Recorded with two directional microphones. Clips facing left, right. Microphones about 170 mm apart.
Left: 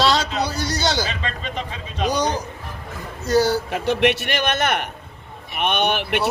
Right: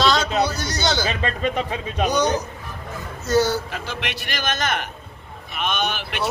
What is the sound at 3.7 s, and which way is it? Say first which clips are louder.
Speech: left 11 dB; 60° left (ahead or behind).